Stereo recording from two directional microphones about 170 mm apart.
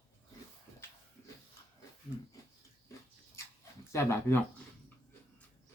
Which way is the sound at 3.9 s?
15° left (ahead or behind).